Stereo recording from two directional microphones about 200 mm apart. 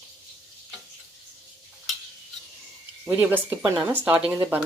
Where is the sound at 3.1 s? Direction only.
10° right (ahead or behind).